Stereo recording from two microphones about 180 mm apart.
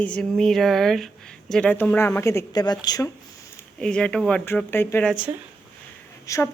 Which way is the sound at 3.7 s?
5° left (ahead or behind).